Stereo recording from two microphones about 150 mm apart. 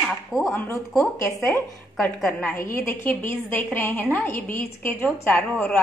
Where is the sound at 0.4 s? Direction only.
20° left (ahead or behind).